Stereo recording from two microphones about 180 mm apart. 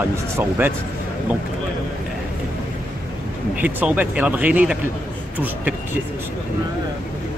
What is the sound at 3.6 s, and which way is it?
Speech, 10° right (ahead or behind).